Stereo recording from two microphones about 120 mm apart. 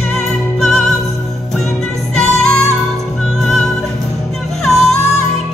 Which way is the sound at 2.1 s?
5° left (ahead or behind).